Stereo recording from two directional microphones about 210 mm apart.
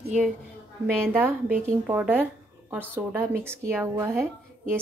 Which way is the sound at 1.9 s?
10° right (ahead or behind).